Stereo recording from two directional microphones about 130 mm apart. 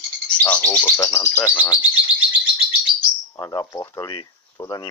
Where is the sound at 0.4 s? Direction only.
15° left (ahead or behind).